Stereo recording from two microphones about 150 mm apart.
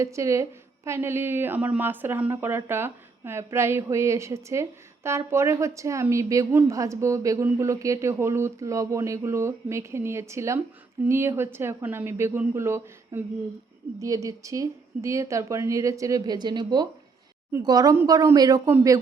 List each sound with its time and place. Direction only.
0.0 s a woman's voice: 20° right (ahead or behind)